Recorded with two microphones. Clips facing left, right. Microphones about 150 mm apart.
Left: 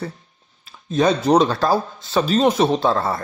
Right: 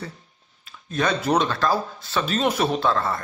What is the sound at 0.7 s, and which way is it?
Speech, 30° left (ahead or behind).